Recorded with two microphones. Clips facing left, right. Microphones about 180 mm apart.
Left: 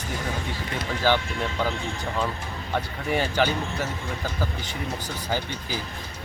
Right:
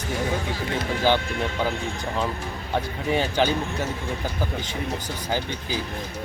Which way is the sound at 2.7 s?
20° right (ahead or behind).